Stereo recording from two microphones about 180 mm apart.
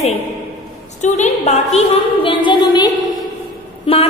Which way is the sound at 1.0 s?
40° left (ahead or behind).